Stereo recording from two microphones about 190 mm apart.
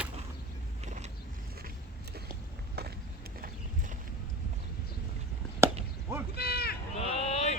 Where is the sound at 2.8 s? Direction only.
55° right (ahead or behind).